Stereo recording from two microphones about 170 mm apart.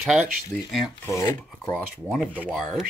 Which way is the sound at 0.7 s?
Centre (ahead or behind).